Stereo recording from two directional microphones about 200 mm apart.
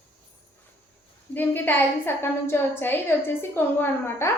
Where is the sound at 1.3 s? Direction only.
10° left (ahead or behind).